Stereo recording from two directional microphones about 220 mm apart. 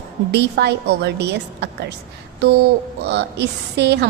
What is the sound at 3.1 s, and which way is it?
A woman's voice, 50° right (ahead or behind).